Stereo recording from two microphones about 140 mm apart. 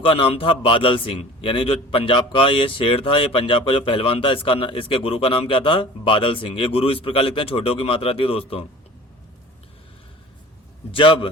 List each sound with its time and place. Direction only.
0.0 s a man's voice: 40° left (ahead or behind)
10.9 s a man's voice: 40° left (ahead or behind)